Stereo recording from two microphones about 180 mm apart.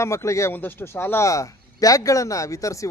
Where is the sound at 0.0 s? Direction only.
15° left (ahead or behind).